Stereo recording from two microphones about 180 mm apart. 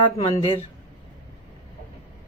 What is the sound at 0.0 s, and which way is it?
Speech, 30° left (ahead or behind).